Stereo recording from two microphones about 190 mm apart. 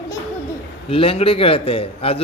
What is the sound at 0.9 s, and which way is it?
A man's voice, 30° left (ahead or behind).